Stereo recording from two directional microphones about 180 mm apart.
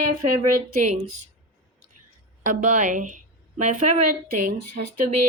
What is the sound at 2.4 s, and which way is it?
A woman's voice, 45° right (ahead or behind).